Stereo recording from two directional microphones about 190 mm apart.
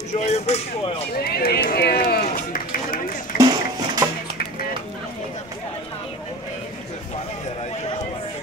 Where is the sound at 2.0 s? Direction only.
50° left (ahead or behind).